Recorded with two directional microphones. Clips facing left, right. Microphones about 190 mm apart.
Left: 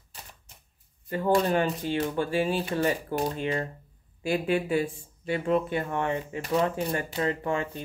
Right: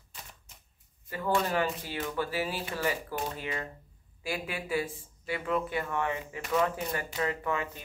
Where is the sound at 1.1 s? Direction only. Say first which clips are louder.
Left 6 dB; 30° left (ahead or behind).